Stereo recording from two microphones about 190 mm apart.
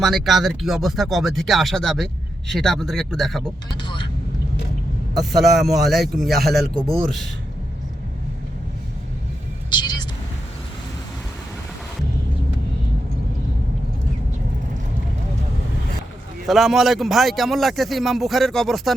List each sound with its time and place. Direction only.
0.0 s a man's voice: centre (ahead or behind)
3.8 s speech: 25° left (ahead or behind)
5.1 s a man's voice: centre (ahead or behind)
9.6 s vehicle: 25° left (ahead or behind)
16.5 s a man's voice: centre (ahead or behind)